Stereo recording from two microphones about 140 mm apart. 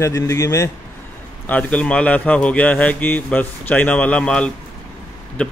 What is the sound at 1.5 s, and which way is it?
Speech, 10° left (ahead or behind).